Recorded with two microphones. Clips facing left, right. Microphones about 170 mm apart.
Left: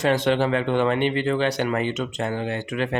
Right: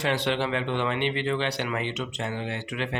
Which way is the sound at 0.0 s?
45° left (ahead or behind).